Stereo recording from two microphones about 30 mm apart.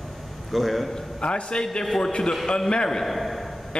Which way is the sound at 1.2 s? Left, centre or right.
Left.